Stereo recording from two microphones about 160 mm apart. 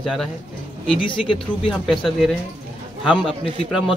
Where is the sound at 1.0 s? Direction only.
30° left (ahead or behind).